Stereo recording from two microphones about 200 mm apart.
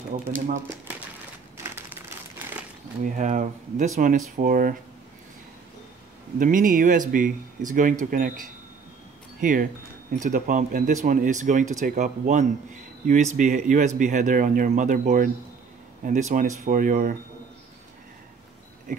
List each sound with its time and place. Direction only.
0.1 s speech: 40° right (ahead or behind)
1.6 s crumpling: 10° right (ahead or behind)
3.0 s speech: 40° right (ahead or behind)
6.4 s speech: 45° right (ahead or behind)